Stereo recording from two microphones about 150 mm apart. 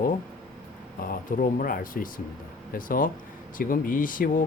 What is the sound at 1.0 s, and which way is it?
Speech, 65° left (ahead or behind).